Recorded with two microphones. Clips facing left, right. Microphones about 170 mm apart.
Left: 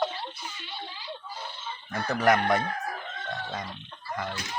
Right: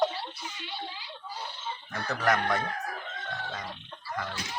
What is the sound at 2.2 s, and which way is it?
Speech, 10° left (ahead or behind).